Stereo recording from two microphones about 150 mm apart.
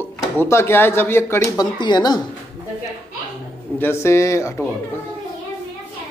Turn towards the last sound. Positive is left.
turn(degrees=20)  # may be behind; listen again after turning